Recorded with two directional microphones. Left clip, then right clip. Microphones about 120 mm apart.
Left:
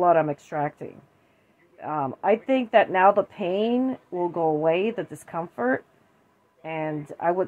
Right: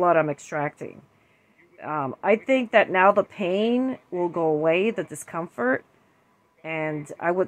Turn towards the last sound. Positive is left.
turn(degrees=-15)  # may be behind; listen again after turning